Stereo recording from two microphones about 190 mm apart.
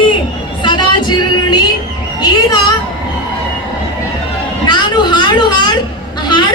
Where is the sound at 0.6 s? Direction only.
25° left (ahead or behind).